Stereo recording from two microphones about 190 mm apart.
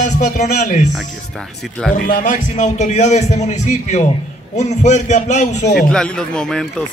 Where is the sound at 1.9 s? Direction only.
45° left (ahead or behind).